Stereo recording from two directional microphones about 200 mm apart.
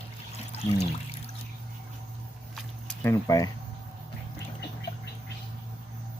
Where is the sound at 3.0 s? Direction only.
15° left (ahead or behind).